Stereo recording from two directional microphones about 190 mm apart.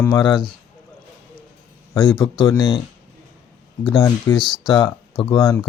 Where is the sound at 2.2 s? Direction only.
20° left (ahead or behind).